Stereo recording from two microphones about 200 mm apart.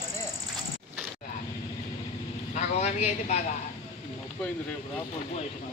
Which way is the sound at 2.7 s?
35° left (ahead or behind).